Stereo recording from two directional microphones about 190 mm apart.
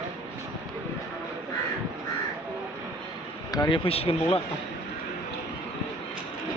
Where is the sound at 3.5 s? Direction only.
25° left (ahead or behind).